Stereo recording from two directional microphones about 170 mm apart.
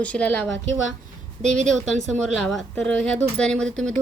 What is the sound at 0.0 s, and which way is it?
Speech, 5° left (ahead or behind).